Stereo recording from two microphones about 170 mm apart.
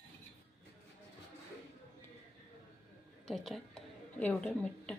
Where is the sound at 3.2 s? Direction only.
Centre (ahead or behind).